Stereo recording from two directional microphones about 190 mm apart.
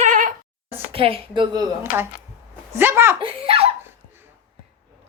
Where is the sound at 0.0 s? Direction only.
45° right (ahead or behind).